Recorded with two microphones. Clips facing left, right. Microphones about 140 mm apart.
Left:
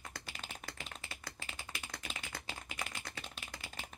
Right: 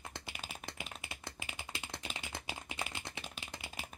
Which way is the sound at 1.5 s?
20° right (ahead or behind).